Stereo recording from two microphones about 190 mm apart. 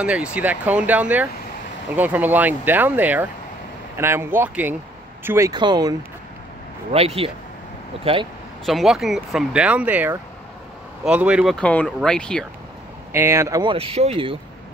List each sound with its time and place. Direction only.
0.0 s speech: 5° right (ahead or behind)
5.5 s speech: 20° right (ahead or behind)
8.6 s speech: centre (ahead or behind)
11.5 s speech: 5° left (ahead or behind)
13.1 s speech: 15° right (ahead or behind); by 14.4 s 30° right (ahead or behind)